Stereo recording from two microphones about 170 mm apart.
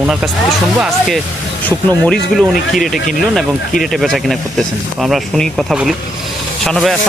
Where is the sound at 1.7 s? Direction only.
5° left (ahead or behind).